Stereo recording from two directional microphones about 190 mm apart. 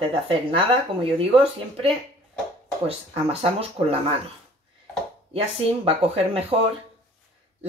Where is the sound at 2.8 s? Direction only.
30° right (ahead or behind).